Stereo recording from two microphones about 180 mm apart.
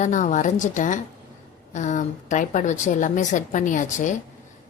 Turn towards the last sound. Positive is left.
turn(degrees=45)  # may be behind; listen again after turning